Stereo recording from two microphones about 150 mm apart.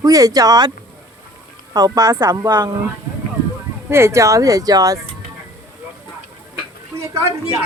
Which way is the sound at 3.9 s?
15° right (ahead or behind).